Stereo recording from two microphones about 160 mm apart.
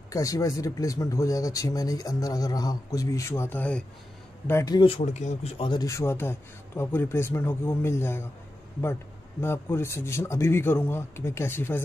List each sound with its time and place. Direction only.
0.1 s speech: 20° left (ahead or behind)
4.7 s speech: 35° left (ahead or behind); by 8.3 s 15° left (ahead or behind)
9.4 s speech: 15° left (ahead or behind)